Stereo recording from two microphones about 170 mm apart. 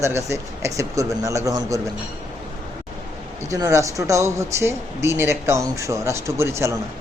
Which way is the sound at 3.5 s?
20° right (ahead or behind).